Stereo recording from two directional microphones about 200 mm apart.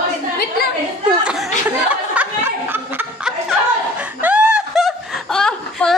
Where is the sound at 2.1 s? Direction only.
10° right (ahead or behind).